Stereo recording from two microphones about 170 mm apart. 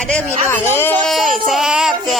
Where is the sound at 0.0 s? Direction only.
10° left (ahead or behind).